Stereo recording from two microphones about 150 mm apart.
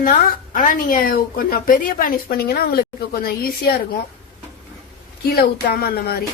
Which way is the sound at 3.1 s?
90° left.